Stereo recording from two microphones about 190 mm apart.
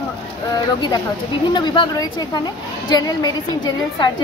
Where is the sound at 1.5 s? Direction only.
25° left (ahead or behind).